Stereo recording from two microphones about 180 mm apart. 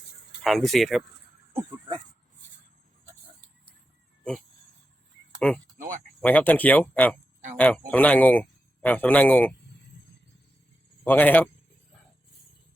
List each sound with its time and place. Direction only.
0.4 s speech: centre (ahead or behind)
1.5 s speech: 20° right (ahead or behind)
5.6 s a sound: 45° right (ahead or behind)
6.2 s a man's voice: 10° left (ahead or behind)
11.0 s a man's voice: 10° left (ahead or behind)